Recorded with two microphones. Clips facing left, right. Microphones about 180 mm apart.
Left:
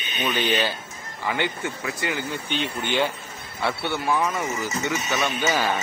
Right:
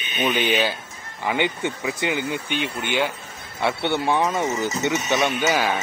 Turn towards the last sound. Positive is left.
turn(degrees=-10)  # may be behind; listen again after turning